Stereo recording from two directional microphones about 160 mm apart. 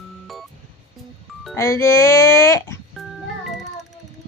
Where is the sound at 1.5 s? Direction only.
15° left (ahead or behind).